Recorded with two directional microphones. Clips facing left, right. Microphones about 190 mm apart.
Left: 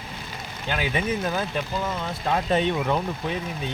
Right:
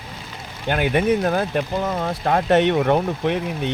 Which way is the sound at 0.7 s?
55° right (ahead or behind).